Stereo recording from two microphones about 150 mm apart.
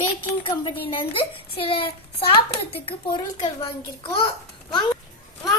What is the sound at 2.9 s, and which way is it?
A child's voice, 30° left (ahead or behind).